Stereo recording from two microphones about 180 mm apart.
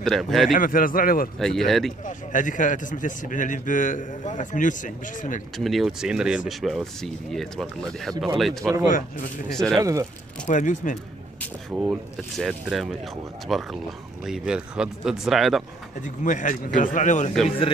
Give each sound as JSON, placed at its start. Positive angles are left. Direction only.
{"t": 0.0, "sound": "speech", "side_deg": 0}
{"t": 0.5, "sound": "a man's voice", "side_deg": 50}
{"t": 1.4, "sound": "speech", "side_deg": 0}
{"t": 2.0, "sound": "a man's voice", "side_deg": 45}
{"t": 5.6, "sound": "speech", "side_deg": 0}
{"t": 9.8, "sound": "speech", "side_deg": -15}
{"t": 10.4, "sound": "a man's voice", "side_deg": 45}
{"t": 11.7, "sound": "speech", "side_deg": -5}
{"t": 16.0, "sound": "a man's voice", "side_deg": 45}
{"t": 17.3, "sound": "speech", "side_deg": 0}